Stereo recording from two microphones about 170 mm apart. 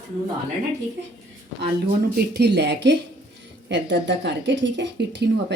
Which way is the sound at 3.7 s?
90° right.